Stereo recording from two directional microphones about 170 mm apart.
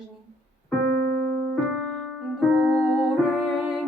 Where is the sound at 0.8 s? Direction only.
65° right (ahead or behind).